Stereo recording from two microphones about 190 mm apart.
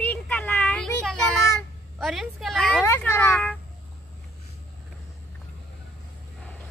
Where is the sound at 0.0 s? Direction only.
10° left (ahead or behind).